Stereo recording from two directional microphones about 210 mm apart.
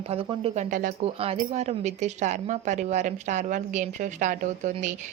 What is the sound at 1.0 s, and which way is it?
A woman's voice, 30° right (ahead or behind).